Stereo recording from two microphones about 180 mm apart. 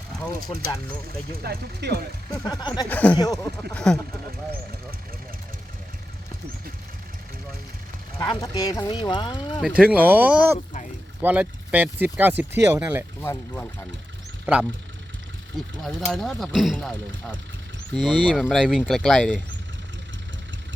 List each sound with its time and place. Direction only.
0.5 s speech: 35° left (ahead or behind)
1.4 s speech: 60° right (ahead or behind)
2.4 s speech: 20° left (ahead or behind)
2.9 s speech: 10° left (ahead or behind)
8.2 s speech: 25° left (ahead or behind)
9.6 s speech: 5° right (ahead or behind)
14.4 s speech: 10° right (ahead or behind)
15.8 s speech: centre (ahead or behind)
17.9 s speech: centre (ahead or behind)